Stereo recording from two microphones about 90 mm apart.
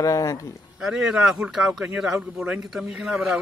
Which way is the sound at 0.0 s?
40° left (ahead or behind).